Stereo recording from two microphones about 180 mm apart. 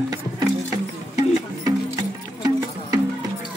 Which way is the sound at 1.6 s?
20° right (ahead or behind).